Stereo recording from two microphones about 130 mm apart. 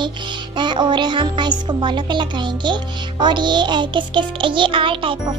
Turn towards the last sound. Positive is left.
turn(degrees=-40)  # may be behind; listen again after turning